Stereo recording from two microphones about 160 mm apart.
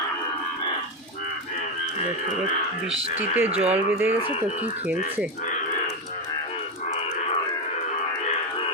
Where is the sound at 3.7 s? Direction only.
10° right (ahead or behind).